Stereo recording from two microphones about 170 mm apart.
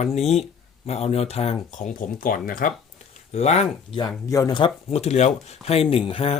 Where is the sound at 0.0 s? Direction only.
40° left (ahead or behind); by 2.7 s 55° left (ahead or behind).